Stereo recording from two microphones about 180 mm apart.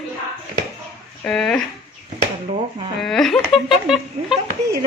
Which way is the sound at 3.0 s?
Centre (ahead or behind).